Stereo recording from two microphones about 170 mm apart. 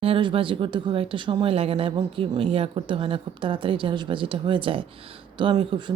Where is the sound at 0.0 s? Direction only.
30° right (ahead or behind).